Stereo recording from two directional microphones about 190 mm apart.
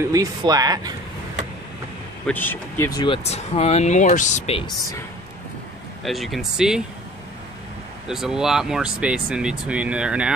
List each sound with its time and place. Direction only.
0.1 s speech: 20° right (ahead or behind)
2.2 s speech: 10° left (ahead or behind)
3.0 s speech: 30° left (ahead or behind)
6.0 s speech: centre (ahead or behind)
8.1 s speech: 5° right (ahead or behind)